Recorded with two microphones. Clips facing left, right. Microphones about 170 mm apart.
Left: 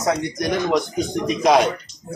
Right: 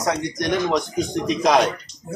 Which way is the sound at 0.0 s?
5° left (ahead or behind).